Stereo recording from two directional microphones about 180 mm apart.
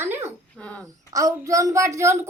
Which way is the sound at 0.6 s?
5° left (ahead or behind).